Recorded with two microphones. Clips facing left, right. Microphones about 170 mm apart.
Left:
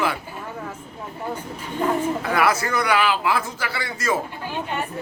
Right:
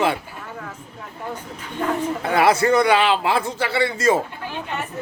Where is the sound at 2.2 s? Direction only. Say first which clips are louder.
Right 4 dB; 30° right (ahead or behind).